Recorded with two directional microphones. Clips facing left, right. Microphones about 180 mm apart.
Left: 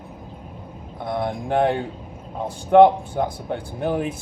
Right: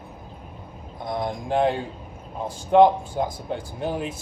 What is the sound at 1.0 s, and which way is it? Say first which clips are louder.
A man's voice: left 2 dB; 60° left (ahead or behind).